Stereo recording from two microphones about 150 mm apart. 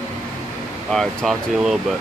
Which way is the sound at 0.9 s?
5° left (ahead or behind).